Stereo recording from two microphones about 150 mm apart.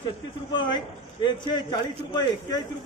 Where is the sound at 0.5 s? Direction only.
30° left (ahead or behind).